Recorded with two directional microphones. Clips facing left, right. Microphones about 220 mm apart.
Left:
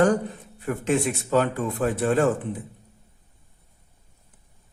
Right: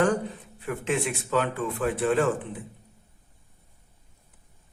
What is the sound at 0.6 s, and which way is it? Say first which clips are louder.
Speech: left 4 dB; 40° left (ahead or behind).